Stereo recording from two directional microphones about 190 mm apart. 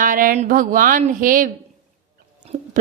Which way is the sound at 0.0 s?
45° right (ahead or behind).